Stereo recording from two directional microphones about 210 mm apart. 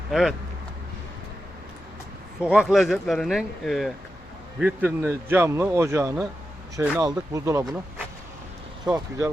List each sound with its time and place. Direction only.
0.1 s speech: centre (ahead or behind)
2.4 s speech: 5° right (ahead or behind)